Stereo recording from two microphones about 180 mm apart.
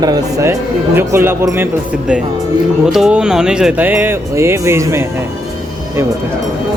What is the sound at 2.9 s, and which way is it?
Speech, centre (ahead or behind).